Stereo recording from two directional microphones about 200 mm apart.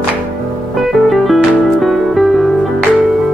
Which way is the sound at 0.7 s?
Centre (ahead or behind).